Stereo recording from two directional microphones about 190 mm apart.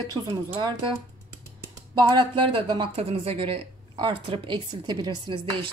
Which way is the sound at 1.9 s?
25° right (ahead or behind).